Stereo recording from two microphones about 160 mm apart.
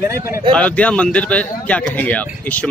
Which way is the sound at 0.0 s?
15° right (ahead or behind).